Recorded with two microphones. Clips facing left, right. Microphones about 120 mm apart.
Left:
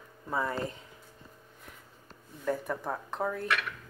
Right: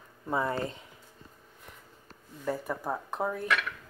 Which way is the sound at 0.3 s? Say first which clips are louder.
Right 2 dB; 25° right (ahead or behind).